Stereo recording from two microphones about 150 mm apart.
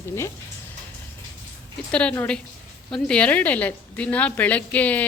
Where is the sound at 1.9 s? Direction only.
5° left (ahead or behind).